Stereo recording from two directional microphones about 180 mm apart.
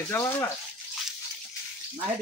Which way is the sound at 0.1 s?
15° left (ahead or behind).